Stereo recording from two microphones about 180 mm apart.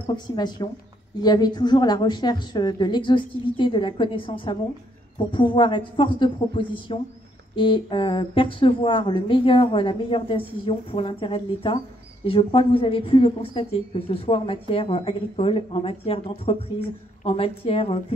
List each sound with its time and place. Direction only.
0.0 s a woman's voice: 25° left (ahead or behind)